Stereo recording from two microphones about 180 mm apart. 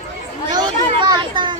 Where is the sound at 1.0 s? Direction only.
25° right (ahead or behind).